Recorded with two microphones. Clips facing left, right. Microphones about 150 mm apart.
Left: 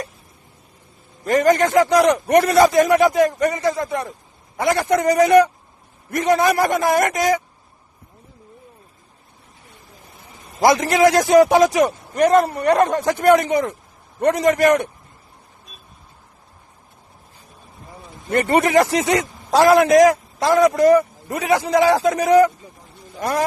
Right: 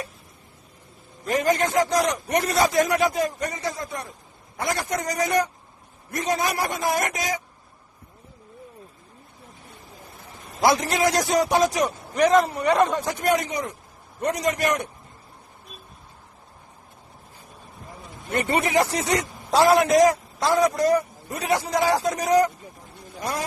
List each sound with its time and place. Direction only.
1.3 s a man's voice: 80° left
4.6 s a man's voice: 70° left (ahead or behind)
6.1 s a man's voice: 65° left (ahead or behind)
10.6 s a man's voice: 70° left (ahead or behind)
18.3 s a man's voice: 55° left (ahead or behind)
20.5 s a man's voice: 90° left
20.7 s a man's voice: 60° left (ahead or behind)
23.2 s speech: 55° left (ahead or behind)